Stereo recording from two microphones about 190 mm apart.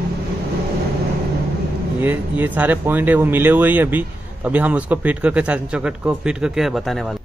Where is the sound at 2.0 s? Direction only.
10° right (ahead or behind).